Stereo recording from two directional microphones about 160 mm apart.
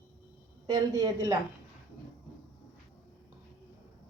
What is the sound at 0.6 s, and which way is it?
Speech, 25° right (ahead or behind).